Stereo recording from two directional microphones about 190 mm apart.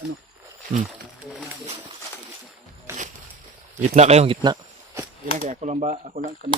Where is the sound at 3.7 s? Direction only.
35° right (ahead or behind).